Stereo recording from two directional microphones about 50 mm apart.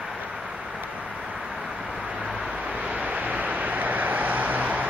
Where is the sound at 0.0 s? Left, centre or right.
Centre.